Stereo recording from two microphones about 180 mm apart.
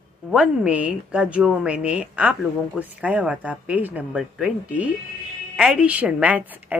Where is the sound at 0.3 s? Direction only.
5° right (ahead or behind).